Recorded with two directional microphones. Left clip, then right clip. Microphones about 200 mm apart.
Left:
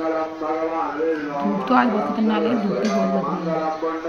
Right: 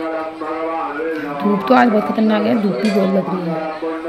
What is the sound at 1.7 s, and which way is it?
Speech, 25° right (ahead or behind).